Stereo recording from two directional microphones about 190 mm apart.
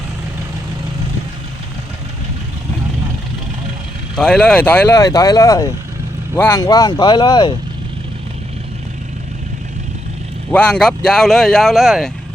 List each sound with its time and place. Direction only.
4.1 s speech: 5° left (ahead or behind); by 7.5 s 20° left (ahead or behind)
10.5 s speech: 5° left (ahead or behind)